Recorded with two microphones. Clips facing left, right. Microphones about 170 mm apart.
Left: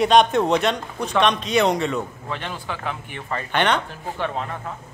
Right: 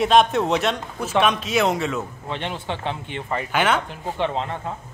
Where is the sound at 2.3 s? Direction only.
25° right (ahead or behind).